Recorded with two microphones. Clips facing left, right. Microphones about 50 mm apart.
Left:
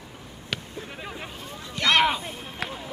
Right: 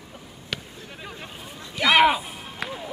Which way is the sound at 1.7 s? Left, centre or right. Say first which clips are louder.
Right 4 dB; centre.